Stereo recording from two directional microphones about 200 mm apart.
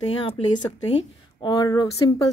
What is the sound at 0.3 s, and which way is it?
Speech, 30° left (ahead or behind).